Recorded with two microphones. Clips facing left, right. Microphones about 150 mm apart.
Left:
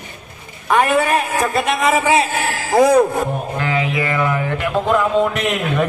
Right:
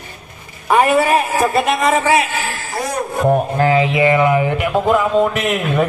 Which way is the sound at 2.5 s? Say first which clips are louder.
Left 4 dB; 90° left.